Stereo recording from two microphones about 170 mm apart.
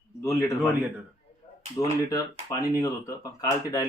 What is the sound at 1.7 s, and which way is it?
Speech, 20° left (ahead or behind).